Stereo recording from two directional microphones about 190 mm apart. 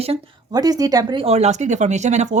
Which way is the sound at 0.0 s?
30° right (ahead or behind).